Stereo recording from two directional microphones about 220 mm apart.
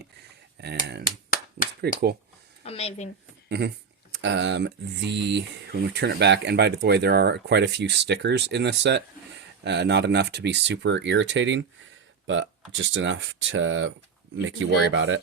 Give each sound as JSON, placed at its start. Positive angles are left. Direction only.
{"t": 0.6, "sound": "speech", "side_deg": -50}
{"t": 1.0, "sound": "finger snapping", "side_deg": 40}
{"t": 1.8, "sound": "speech", "side_deg": -45}
{"t": 2.6, "sound": "speech", "side_deg": 25}
{"t": 4.2, "sound": "speech", "side_deg": -55}